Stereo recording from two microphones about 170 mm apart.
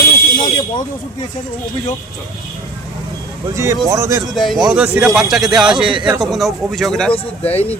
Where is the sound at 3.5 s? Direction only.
15° right (ahead or behind).